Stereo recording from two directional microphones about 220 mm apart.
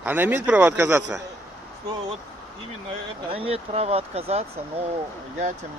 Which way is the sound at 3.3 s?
25° right (ahead or behind).